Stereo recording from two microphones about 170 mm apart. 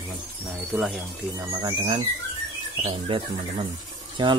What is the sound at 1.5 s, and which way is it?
Speech, 25° right (ahead or behind).